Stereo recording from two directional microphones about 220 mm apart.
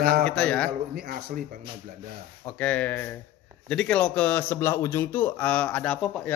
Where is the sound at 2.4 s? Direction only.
5° left (ahead or behind).